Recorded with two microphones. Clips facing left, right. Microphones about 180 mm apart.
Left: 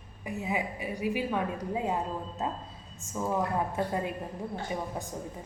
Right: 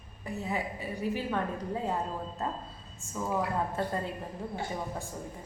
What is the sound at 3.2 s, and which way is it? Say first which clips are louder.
A woman's voice: left 1 dB; 15° left (ahead or behind).